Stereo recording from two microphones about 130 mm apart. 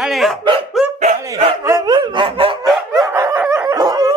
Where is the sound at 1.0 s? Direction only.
60° right (ahead or behind).